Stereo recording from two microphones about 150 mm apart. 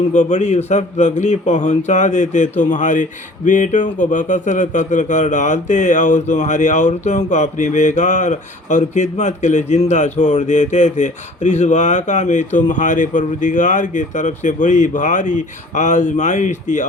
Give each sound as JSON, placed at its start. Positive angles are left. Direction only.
{"t": 0.1, "sound": "speech", "side_deg": 50}